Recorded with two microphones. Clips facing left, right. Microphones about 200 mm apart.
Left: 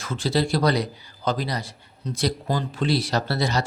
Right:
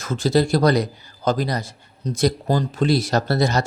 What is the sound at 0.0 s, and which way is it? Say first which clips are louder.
Speech: right 5 dB; 45° right (ahead or behind).